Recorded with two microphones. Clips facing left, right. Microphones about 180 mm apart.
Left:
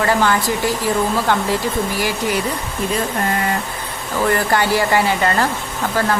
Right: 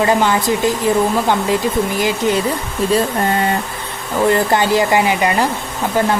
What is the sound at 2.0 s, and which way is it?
Speech, 20° right (ahead or behind).